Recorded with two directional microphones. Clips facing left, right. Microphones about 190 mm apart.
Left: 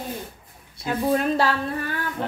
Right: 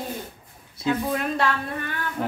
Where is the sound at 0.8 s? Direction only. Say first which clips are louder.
Left 2 dB; 35° left (ahead or behind).